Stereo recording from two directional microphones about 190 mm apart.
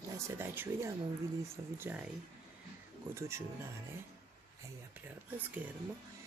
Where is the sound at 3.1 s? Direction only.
15° right (ahead or behind).